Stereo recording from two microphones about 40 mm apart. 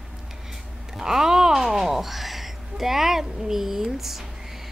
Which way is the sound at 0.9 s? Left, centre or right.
Centre.